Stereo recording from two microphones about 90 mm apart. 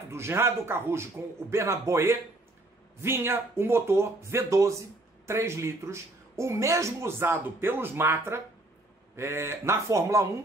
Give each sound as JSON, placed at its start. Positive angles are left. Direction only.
{"t": 0.1, "sound": "a man's voice", "side_deg": -30}